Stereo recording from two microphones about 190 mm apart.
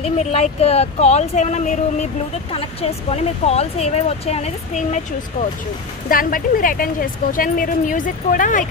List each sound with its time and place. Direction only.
0.0 s speech: 35° left (ahead or behind)
6.0 s speech: 45° left (ahead or behind)